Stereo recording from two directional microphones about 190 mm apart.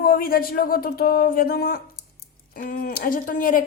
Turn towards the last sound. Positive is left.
turn(degrees=45)  # may be behind; listen again after turning